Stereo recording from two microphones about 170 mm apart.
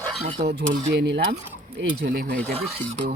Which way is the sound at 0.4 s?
75° right (ahead or behind).